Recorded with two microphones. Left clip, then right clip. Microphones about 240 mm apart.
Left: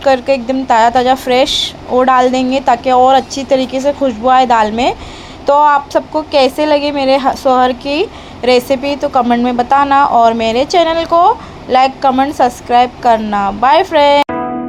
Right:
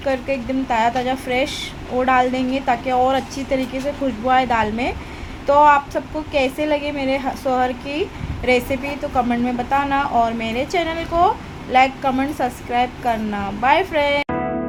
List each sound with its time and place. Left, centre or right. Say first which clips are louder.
0.0 s a woman's voice: left 11 dB; centre